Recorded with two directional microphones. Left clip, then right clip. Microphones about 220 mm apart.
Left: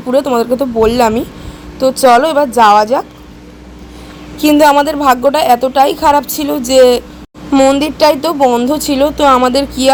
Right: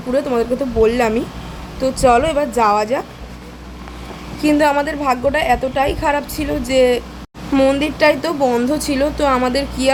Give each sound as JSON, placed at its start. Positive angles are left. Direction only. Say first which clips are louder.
{"t": 0.1, "sound": "a woman's voice", "louder": "left 6 dB", "side_deg": 25}
{"t": 4.4, "sound": "a woman's voice", "louder": "left 7 dB", "side_deg": 30}